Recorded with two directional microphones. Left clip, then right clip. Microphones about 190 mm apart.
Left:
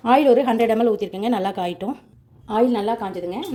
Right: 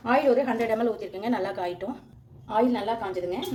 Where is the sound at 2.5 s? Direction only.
50° left (ahead or behind).